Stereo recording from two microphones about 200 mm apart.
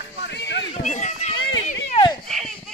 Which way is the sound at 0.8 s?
35° left (ahead or behind).